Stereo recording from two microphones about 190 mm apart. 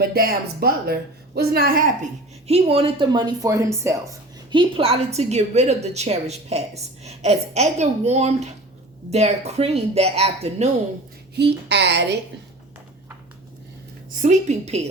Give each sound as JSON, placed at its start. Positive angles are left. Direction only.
{"t": 0.0, "sound": "a woman's voice", "side_deg": -55}
{"t": 2.5, "sound": "speech", "side_deg": -30}
{"t": 4.5, "sound": "a woman's voice", "side_deg": -30}
{"t": 11.3, "sound": "a woman's voice", "side_deg": -65}
{"t": 14.2, "sound": "a woman's voice", "side_deg": -40}